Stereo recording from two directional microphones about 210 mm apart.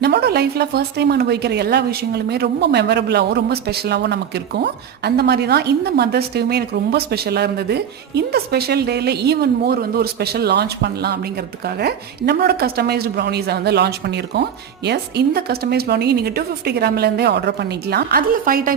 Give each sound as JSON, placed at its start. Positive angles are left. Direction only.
{"t": 0.0, "sound": "a woman's voice", "side_deg": -50}